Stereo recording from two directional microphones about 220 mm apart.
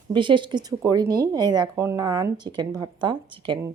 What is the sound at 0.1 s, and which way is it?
A woman's voice, 20° right (ahead or behind).